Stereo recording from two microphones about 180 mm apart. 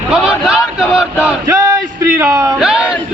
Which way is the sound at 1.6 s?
15° right (ahead or behind).